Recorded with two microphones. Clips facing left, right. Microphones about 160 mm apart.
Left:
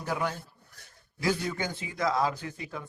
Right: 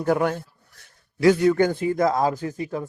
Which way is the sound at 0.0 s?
55° right (ahead or behind).